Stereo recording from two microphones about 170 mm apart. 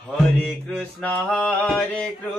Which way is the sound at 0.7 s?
10° left (ahead or behind).